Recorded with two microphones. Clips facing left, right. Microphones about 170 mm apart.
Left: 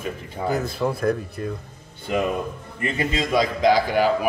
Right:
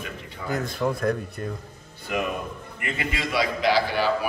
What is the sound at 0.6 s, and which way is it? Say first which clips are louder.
Speech: left 2 dB; centre (ahead or behind).